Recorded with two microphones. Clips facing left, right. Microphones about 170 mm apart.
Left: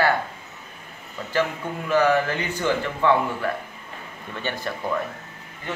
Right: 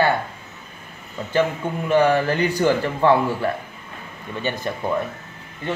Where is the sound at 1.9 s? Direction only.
30° right (ahead or behind).